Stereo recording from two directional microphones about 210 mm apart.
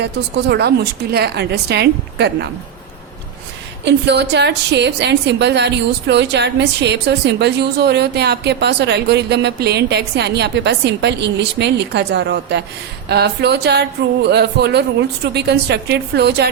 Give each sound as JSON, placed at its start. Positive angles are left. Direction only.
{"t": 0.0, "sound": "a woman's voice", "side_deg": -50}
{"t": 3.8, "sound": "a woman's voice", "side_deg": -55}